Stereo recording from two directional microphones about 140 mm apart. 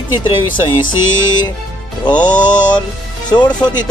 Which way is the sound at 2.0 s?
30° left (ahead or behind).